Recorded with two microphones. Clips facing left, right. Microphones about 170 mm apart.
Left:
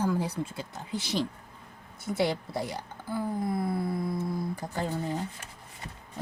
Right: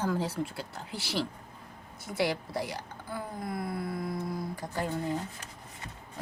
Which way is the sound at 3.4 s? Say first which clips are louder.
Left 5 dB; 25° left (ahead or behind).